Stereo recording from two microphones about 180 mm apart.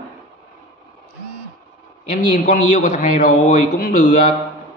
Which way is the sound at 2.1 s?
45° left (ahead or behind).